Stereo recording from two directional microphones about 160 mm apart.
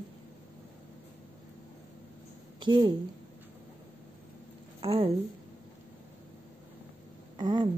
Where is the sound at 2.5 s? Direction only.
25° right (ahead or behind).